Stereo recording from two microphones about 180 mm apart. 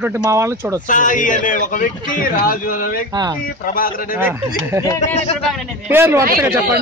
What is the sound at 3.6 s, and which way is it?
Speech, 50° left (ahead or behind).